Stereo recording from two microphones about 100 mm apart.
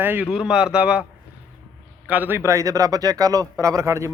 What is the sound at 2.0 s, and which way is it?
A man's voice, 20° right (ahead or behind).